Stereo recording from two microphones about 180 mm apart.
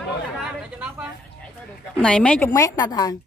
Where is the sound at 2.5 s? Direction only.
20° left (ahead or behind).